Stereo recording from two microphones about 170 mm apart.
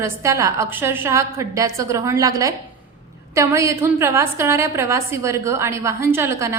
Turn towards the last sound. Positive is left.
turn(degrees=-15)  # may be behind; listen again after turning